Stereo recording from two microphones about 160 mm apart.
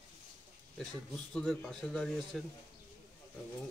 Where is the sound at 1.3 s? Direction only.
5° left (ahead or behind).